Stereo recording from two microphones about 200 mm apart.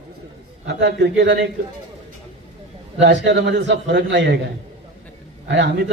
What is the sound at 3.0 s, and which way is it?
A man's voice, 65° right (ahead or behind).